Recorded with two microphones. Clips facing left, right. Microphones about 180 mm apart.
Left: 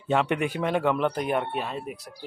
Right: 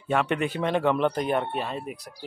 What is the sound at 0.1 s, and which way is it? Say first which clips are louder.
Speech: left 1 dB; 15° left (ahead or behind).